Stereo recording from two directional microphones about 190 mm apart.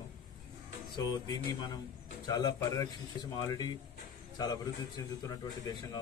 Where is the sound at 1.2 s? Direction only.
20° left (ahead or behind).